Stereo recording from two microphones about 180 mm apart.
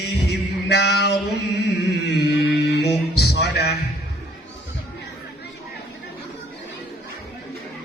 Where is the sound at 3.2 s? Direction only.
65° left (ahead or behind).